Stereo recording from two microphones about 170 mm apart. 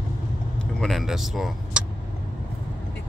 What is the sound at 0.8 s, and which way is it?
Speech, centre (ahead or behind).